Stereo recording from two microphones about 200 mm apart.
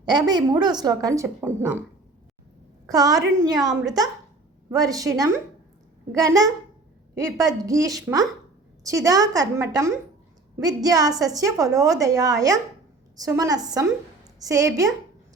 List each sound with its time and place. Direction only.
0.0 s a woman's voice: 20° right (ahead or behind)
2.8 s a woman's voice: 20° right (ahead or behind)
7.6 s a woman's voice: 15° right (ahead or behind)